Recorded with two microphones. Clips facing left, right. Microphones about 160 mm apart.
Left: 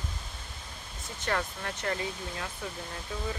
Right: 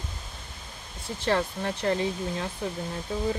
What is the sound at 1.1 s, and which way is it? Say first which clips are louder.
Speech: right 6 dB; 30° right (ahead or behind).